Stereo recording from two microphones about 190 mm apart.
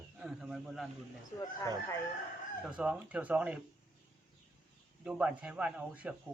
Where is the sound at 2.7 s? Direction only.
5° right (ahead or behind).